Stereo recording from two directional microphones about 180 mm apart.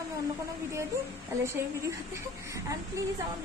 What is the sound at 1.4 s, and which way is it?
Speech, 15° right (ahead or behind).